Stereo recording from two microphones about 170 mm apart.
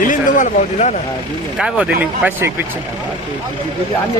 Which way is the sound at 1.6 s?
5° right (ahead or behind).